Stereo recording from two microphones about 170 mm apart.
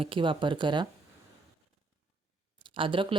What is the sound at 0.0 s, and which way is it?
Speech, 30° right (ahead or behind).